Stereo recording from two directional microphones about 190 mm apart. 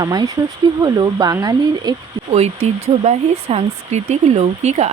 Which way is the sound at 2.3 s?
35° right (ahead or behind).